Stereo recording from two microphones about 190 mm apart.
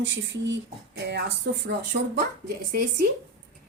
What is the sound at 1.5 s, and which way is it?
Speech, 60° right (ahead or behind).